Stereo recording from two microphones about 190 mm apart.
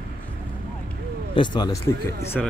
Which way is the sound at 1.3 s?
25° left (ahead or behind).